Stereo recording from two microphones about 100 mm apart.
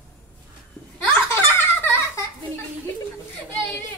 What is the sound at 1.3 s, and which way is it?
Giggle, 25° left (ahead or behind).